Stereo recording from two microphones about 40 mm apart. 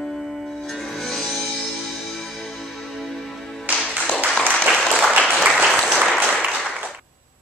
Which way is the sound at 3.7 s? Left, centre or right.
Right.